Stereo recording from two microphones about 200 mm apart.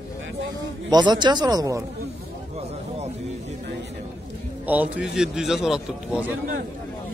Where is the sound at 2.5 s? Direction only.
30° right (ahead or behind).